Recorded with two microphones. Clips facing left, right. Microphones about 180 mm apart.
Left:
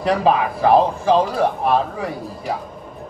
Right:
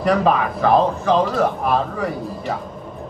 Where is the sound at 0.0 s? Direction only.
25° left (ahead or behind).